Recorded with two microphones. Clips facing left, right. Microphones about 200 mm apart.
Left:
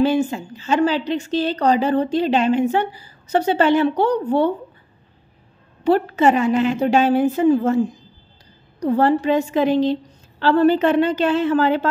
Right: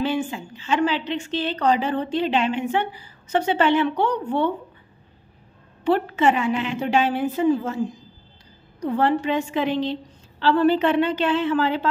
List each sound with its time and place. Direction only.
0.0 s a woman's voice: 40° left (ahead or behind)
5.9 s a woman's voice: 40° left (ahead or behind)